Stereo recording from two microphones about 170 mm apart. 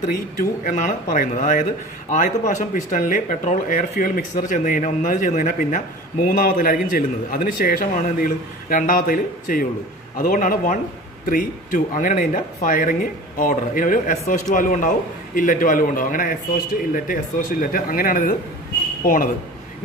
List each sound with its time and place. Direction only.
0.1 s a man's voice: 50° left (ahead or behind)